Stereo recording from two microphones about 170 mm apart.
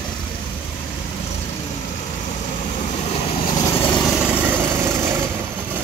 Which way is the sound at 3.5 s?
15° left (ahead or behind).